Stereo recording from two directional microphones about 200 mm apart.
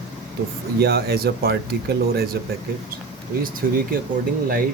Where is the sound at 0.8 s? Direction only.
50° right (ahead or behind).